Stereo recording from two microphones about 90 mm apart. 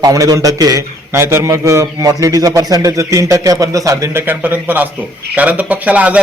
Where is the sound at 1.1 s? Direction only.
30° right (ahead or behind).